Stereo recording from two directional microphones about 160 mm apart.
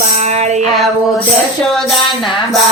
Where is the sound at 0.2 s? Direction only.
45° right (ahead or behind).